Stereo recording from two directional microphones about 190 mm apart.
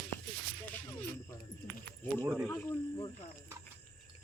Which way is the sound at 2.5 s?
15° left (ahead or behind).